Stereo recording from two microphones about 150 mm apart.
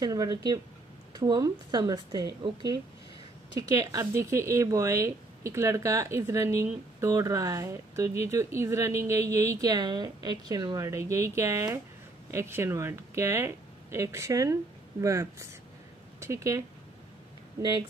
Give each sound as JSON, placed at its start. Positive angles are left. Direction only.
{"t": 0.0, "sound": "speech", "side_deg": -25}